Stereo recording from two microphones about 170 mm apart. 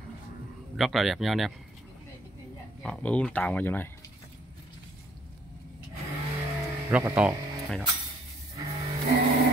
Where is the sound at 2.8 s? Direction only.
5° left (ahead or behind).